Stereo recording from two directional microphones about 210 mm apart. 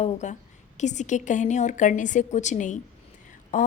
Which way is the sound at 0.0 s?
35° left (ahead or behind).